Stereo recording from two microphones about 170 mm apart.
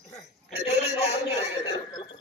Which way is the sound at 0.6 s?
35° left (ahead or behind).